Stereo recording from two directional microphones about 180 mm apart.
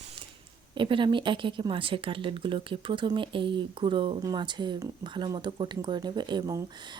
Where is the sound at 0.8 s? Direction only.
25° right (ahead or behind).